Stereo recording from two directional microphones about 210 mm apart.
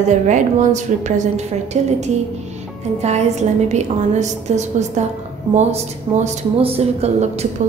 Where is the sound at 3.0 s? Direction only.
30° right (ahead or behind).